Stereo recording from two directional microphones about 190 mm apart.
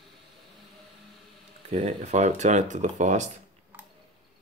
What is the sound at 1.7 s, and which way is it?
Speech, 35° right (ahead or behind).